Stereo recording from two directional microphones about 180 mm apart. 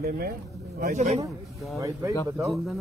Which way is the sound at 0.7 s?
45° right (ahead or behind).